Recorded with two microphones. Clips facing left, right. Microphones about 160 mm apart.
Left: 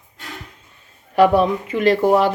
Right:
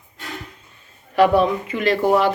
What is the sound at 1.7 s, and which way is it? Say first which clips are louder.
Speech: left 3 dB; 40° left (ahead or behind).